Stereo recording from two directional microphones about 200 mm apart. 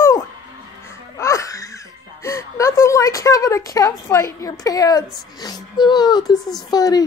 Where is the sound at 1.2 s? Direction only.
15° left (ahead or behind).